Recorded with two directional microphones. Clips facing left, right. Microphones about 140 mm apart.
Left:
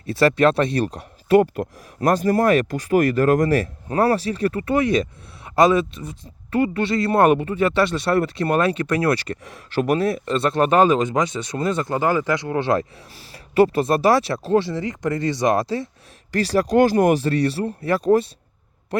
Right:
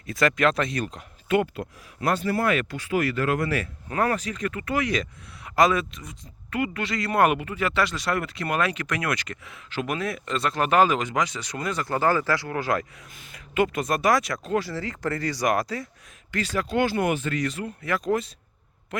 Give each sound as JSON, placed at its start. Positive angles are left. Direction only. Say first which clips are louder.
{"t": 0.0, "sound": "speech", "louder": "left 6 dB", "side_deg": 30}
{"t": 16.3, "sound": "speech", "louder": "left 8 dB", "side_deg": 35}